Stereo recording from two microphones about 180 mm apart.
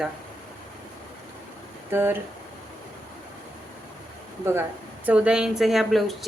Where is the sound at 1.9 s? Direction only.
10° right (ahead or behind).